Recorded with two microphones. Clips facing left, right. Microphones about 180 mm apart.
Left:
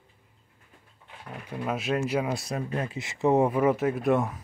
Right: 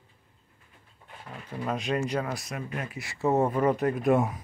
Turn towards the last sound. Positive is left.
turn(degrees=0)  # may be behind; listen again after turning